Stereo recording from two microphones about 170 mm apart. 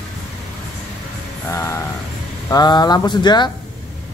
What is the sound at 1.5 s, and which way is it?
Speech, 15° left (ahead or behind).